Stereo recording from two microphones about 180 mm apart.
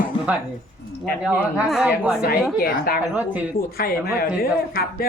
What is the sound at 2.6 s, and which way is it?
Speech, 55° left (ahead or behind).